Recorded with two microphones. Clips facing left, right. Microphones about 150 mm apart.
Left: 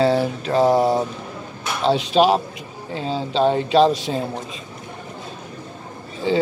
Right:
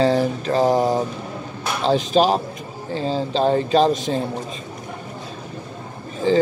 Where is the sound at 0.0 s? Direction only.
5° left (ahead or behind).